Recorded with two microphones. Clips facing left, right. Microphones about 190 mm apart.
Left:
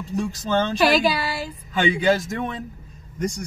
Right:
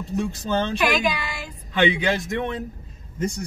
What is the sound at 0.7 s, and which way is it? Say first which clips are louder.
Child singing: left 4 dB; 35° left (ahead or behind).